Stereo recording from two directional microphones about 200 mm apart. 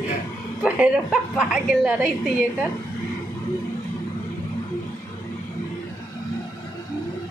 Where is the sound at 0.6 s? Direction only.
5° right (ahead or behind).